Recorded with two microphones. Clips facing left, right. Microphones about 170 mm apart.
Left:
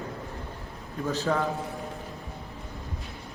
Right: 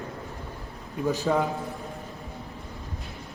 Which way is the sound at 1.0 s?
10° right (ahead or behind).